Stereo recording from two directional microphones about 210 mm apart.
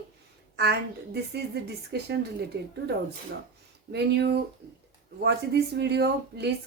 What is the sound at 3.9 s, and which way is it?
A woman's voice, 50° right (ahead or behind).